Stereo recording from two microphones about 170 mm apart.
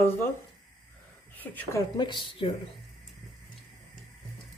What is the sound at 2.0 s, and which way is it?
Speech, 25° left (ahead or behind).